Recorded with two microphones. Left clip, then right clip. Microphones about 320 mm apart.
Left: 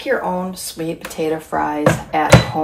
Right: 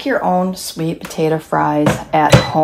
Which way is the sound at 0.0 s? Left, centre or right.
Right.